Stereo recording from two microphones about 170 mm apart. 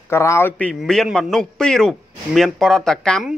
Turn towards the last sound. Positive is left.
turn(degrees=5)  # may be behind; listen again after turning